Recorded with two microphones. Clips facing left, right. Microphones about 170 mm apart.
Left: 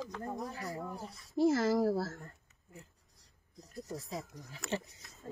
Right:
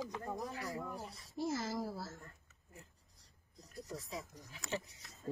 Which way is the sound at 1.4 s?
75° left (ahead or behind).